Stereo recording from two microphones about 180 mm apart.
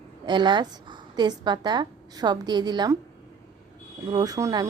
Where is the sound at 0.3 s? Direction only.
25° right (ahead or behind).